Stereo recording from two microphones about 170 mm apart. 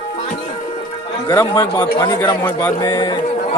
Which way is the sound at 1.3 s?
25° left (ahead or behind).